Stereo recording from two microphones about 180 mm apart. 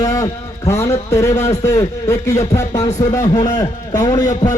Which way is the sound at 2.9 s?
40° left (ahead or behind).